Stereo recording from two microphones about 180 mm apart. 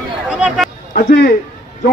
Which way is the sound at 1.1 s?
60° left (ahead or behind).